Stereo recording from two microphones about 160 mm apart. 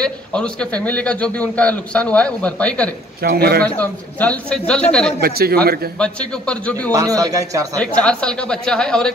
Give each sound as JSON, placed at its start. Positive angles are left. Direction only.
{"t": 0.0, "sound": "a man's voice", "side_deg": 5}
{"t": 3.2, "sound": "a man's voice", "side_deg": -80}
{"t": 3.6, "sound": "a man's voice", "side_deg": 10}
{"t": 5.2, "sound": "a man's voice", "side_deg": -70}
{"t": 5.9, "sound": "a man's voice", "side_deg": 5}
{"t": 6.9, "sound": "speech", "side_deg": -20}
{"t": 7.8, "sound": "speech", "side_deg": 5}